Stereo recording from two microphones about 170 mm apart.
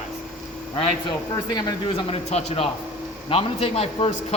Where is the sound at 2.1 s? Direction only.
35° left (ahead or behind).